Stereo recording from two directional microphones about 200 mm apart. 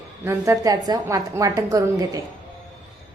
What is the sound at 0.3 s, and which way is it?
A woman's voice, 15° right (ahead or behind).